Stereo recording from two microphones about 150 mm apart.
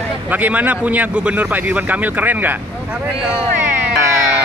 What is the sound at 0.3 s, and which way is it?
A man's voice, 10° right (ahead or behind).